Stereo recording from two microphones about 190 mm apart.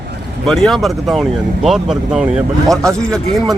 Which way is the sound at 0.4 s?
Centre (ahead or behind).